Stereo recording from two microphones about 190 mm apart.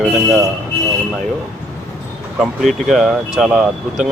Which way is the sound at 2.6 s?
Centre (ahead or behind).